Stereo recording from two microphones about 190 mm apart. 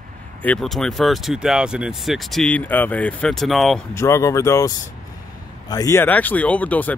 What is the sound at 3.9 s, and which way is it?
Speech, 15° left (ahead or behind).